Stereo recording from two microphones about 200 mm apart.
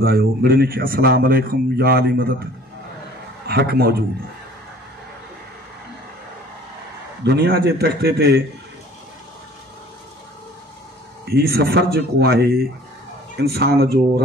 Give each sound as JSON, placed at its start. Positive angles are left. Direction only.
{"t": 0.0, "sound": "speech", "side_deg": -50}
{"t": 3.4, "sound": "speech", "side_deg": -50}
{"t": 7.2, "sound": "speech", "side_deg": -50}
{"t": 11.2, "sound": "speech", "side_deg": -50}